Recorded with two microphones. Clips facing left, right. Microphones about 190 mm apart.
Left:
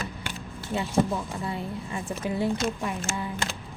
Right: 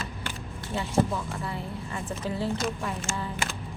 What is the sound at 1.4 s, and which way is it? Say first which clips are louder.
A woman's voice: left 2 dB; 15° left (ahead or behind).